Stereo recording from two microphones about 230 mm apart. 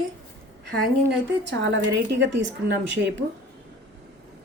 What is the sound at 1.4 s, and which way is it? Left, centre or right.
Speech, right.